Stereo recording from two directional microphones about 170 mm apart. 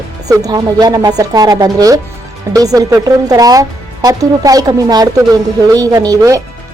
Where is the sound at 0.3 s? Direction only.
20° right (ahead or behind).